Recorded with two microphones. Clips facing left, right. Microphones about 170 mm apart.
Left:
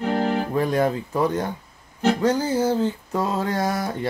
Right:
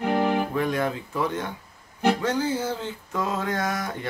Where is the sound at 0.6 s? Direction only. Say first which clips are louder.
Left 4 dB; 35° left (ahead or behind).